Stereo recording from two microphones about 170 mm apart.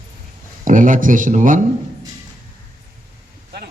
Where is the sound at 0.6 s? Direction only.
50° right (ahead or behind).